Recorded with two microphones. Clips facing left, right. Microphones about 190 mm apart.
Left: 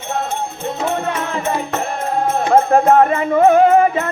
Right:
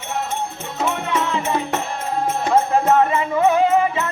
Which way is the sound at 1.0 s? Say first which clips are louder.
Left 1 dB; 45° left (ahead or behind).